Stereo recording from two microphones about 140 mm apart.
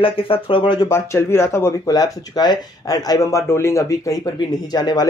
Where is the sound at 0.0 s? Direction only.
40° left (ahead or behind).